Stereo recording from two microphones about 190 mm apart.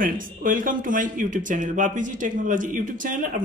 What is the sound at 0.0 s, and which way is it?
A man's voice, 45° right (ahead or behind).